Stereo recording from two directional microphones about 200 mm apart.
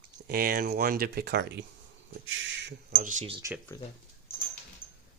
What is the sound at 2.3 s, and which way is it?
Speech, 65° right (ahead or behind).